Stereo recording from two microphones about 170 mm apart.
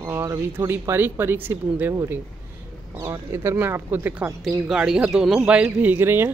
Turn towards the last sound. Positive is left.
turn(degrees=-15)  # may be behind; listen again after turning